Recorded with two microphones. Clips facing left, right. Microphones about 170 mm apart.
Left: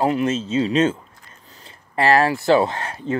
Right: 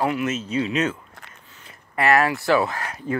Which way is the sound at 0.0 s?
30° left (ahead or behind).